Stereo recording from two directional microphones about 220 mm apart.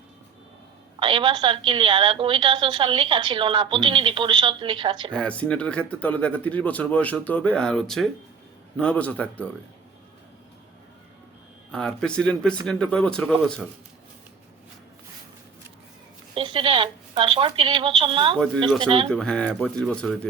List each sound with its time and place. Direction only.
0.9 s a woman's voice: 20° right (ahead or behind)
5.1 s speech: 5° left (ahead or behind)
11.7 s speech: 5° left (ahead or behind)
16.3 s a woman's voice: 25° right (ahead or behind)
19.1 s speech: 5° left (ahead or behind)